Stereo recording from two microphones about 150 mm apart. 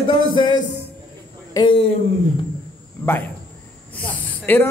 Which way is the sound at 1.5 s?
35° left (ahead or behind).